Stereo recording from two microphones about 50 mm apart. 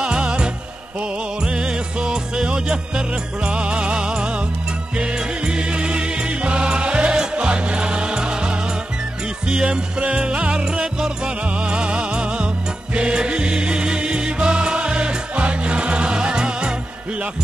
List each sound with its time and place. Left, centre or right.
0.0 s music: centre